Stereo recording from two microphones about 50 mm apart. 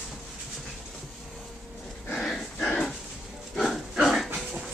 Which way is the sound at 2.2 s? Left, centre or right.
Centre.